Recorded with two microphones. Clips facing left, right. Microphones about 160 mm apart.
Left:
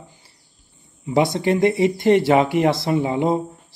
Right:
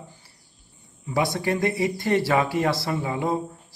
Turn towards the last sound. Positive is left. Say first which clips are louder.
# left 6 dB
turn(degrees=20)  # may be behind; listen again after turning